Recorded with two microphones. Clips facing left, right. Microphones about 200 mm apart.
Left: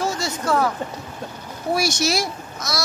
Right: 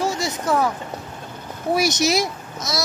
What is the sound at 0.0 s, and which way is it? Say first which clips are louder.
Boat: right 1 dB; 15° right (ahead or behind).